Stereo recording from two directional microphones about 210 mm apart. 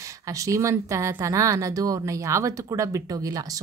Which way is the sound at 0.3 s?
15° right (ahead or behind).